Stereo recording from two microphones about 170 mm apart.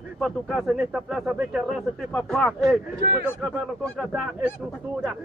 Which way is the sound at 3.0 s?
70° right (ahead or behind).